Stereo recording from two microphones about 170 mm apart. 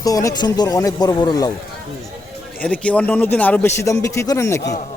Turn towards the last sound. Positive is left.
turn(degrees=15)  # may be behind; listen again after turning